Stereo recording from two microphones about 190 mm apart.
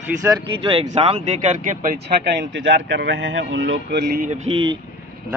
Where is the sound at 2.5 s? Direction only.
70° right (ahead or behind).